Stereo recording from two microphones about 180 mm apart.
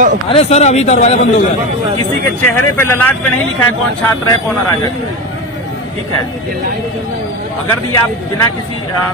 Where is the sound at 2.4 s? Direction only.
15° left (ahead or behind).